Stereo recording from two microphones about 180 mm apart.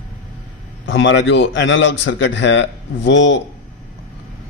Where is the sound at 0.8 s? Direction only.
90° left.